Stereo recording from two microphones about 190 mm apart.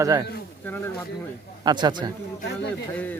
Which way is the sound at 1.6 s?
20° right (ahead or behind).